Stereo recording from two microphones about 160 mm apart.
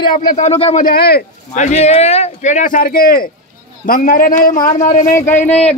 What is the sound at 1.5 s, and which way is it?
A man's voice, 45° left (ahead or behind).